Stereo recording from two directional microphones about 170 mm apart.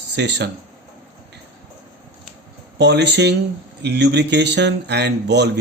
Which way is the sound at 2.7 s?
90° right.